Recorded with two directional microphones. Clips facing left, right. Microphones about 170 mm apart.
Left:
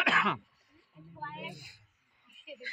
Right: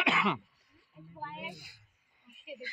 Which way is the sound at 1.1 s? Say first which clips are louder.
Even; 5° right (ahead or behind).